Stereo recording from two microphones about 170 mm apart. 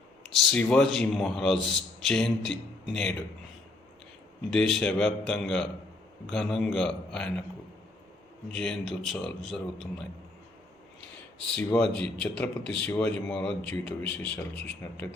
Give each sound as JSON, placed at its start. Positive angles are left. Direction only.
{"t": 0.5, "sound": "a man's voice", "side_deg": 5}
{"t": 4.5, "sound": "a man's voice", "side_deg": 5}
{"t": 8.5, "sound": "a man's voice", "side_deg": 5}
{"t": 11.3, "sound": "a man's voice", "side_deg": 5}